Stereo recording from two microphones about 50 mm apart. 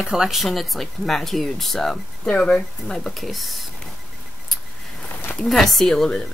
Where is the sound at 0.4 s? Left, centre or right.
Centre.